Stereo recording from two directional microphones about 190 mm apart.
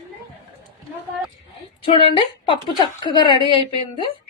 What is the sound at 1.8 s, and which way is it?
A woman's voice, 25° left (ahead or behind).